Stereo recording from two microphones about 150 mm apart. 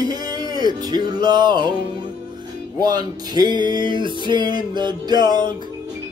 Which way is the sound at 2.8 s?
25° right (ahead or behind).